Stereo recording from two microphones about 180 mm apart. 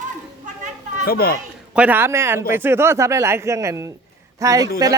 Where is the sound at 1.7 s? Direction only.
10° right (ahead or behind).